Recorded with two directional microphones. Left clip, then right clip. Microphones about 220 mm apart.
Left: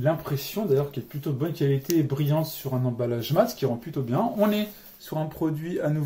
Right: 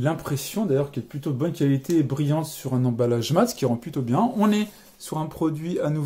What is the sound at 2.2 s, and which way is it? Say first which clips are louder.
Speech: right 1 dB; 55° right (ahead or behind).